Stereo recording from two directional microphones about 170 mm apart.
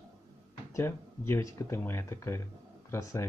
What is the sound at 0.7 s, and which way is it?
Speech, 15° left (ahead or behind).